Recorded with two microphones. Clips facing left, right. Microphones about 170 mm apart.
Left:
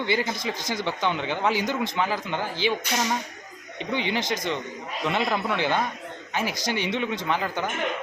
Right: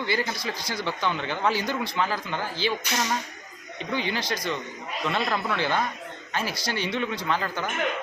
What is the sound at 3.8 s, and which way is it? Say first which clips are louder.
Speech: left 2 dB; 20° left (ahead or behind).